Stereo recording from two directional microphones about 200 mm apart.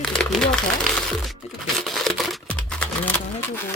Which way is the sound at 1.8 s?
Centre (ahead or behind).